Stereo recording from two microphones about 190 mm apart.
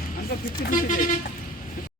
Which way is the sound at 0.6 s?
45° left (ahead or behind).